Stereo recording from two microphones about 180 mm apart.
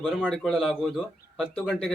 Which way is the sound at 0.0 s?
5° right (ahead or behind).